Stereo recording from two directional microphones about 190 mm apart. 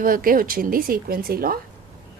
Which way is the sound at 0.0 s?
45° right (ahead or behind).